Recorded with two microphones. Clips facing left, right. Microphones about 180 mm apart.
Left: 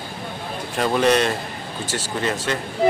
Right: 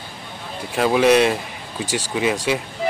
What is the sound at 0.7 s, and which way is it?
Speech, 5° right (ahead or behind).